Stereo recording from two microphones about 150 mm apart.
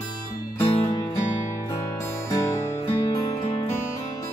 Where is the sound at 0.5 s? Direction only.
15° left (ahead or behind).